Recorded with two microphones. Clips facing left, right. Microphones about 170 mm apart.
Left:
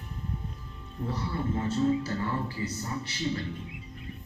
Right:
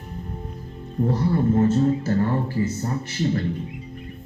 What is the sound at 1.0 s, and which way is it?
Speech, 45° right (ahead or behind).